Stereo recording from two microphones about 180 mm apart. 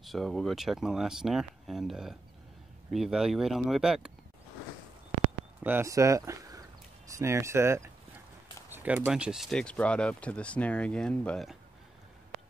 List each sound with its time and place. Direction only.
0.0 s speech: centre (ahead or behind)
5.6 s speech: 10° right (ahead or behind)